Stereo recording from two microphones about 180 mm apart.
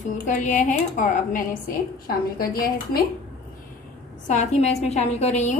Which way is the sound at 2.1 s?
55° left (ahead or behind).